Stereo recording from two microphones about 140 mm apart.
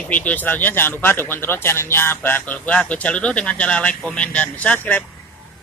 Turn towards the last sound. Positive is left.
turn(degrees=10)  # may be behind; listen again after turning